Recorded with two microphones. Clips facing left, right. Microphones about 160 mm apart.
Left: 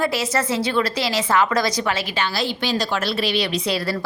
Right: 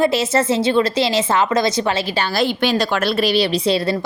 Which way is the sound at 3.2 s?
35° right (ahead or behind).